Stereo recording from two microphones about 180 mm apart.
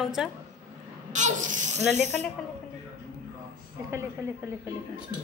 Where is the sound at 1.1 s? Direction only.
40° right (ahead or behind).